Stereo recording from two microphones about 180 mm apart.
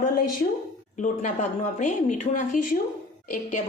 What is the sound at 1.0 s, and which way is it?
A woman's voice, 40° left (ahead or behind).